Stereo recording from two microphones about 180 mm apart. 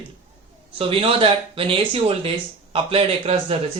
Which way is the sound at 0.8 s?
30° right (ahead or behind).